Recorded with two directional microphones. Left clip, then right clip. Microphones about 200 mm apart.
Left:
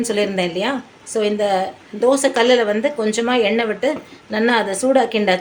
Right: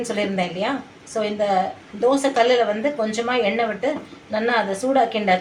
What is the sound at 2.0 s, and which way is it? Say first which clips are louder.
A woman's voice: left 3 dB; 55° left (ahead or behind).